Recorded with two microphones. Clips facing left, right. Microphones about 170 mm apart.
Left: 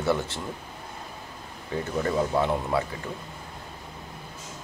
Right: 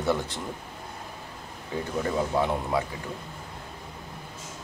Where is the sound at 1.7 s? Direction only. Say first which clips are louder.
Left 2 dB; 15° right (ahead or behind).